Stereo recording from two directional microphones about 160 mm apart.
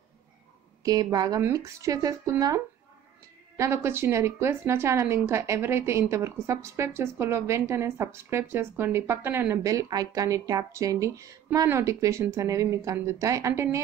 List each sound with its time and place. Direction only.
0.8 s a woman's voice: 25° right (ahead or behind)